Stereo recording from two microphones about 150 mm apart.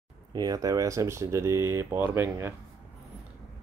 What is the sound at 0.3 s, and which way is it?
Speech, 25° right (ahead or behind).